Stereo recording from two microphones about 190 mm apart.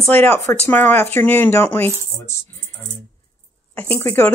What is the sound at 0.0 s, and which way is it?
Speech, 10° left (ahead or behind).